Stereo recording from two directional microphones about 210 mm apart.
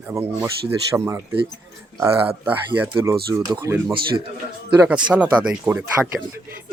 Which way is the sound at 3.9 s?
25° right (ahead or behind).